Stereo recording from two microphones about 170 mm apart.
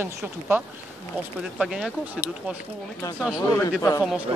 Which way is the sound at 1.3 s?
5° right (ahead or behind).